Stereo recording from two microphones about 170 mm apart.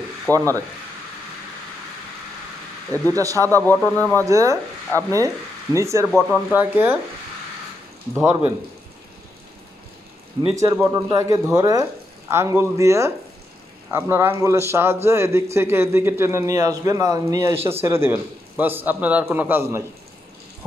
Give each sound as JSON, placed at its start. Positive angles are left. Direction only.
{"t": 0.3, "sound": "speech", "side_deg": 10}
{"t": 3.2, "sound": "speech", "side_deg": -20}
{"t": 3.6, "sound": "speech", "side_deg": 10}
{"t": 4.2, "sound": "speech", "side_deg": -20}
{"t": 6.0, "sound": "speech", "side_deg": 5}
{"t": 6.5, "sound": "a man's voice", "side_deg": -10}
{"t": 10.5, "sound": "a man's voice", "side_deg": -20}